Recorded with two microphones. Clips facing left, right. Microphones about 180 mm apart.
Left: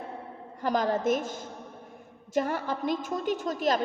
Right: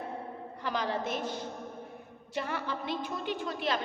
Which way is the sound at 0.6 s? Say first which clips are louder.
Left 7 dB; 45° left (ahead or behind).